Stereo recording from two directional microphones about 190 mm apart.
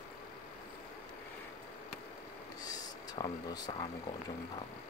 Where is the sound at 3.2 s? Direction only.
20° left (ahead or behind).